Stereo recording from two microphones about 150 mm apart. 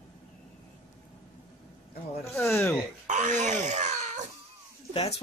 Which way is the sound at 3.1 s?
50° right (ahead or behind).